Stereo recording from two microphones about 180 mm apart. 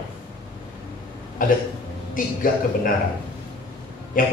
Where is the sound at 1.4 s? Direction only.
50° left (ahead or behind).